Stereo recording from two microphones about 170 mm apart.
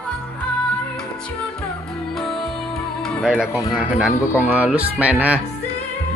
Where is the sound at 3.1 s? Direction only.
5° right (ahead or behind).